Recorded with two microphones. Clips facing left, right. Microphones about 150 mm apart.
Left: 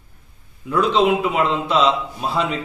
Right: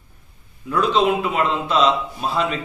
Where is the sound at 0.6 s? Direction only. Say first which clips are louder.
Left 1 dB; 15° left (ahead or behind).